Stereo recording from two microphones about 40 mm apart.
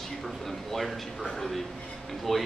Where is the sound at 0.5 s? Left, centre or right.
Centre.